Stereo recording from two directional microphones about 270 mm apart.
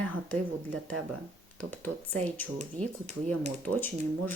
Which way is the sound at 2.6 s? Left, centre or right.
Right.